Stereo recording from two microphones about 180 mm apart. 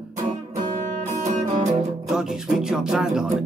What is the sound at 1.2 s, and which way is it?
Music, 40° right (ahead or behind).